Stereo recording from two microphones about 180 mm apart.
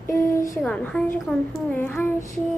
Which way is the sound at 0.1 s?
15° left (ahead or behind).